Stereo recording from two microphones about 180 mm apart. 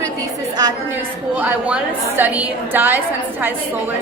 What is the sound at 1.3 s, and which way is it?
A woman's voice, 10° right (ahead or behind).